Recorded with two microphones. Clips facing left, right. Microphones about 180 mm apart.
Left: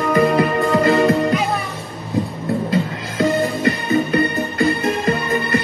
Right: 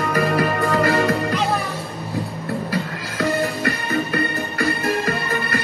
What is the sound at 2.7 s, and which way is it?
Music, 20° left (ahead or behind).